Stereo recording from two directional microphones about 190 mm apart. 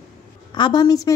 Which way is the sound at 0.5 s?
20° left (ahead or behind).